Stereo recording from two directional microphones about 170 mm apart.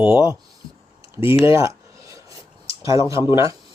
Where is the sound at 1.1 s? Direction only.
15° right (ahead or behind).